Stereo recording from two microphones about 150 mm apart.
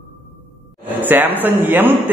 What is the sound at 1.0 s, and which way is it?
Speech, 10° right (ahead or behind).